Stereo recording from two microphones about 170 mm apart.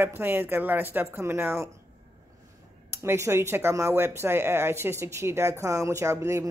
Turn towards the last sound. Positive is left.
turn(degrees=-15)  # may be behind; listen again after turning